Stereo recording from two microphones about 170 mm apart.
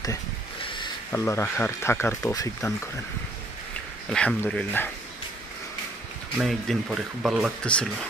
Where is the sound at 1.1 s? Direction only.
15° left (ahead or behind).